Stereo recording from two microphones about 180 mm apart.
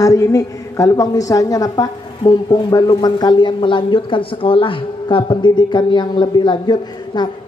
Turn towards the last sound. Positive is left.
turn(degrees=25)  # may be behind; listen again after turning